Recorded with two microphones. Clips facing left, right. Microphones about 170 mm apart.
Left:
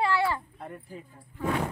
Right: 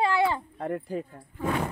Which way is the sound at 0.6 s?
85° right.